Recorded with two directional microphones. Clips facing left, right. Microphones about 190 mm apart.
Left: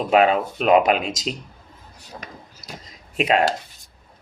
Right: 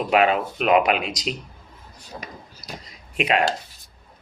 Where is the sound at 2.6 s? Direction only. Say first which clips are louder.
Right 1 dB; 25° left (ahead or behind).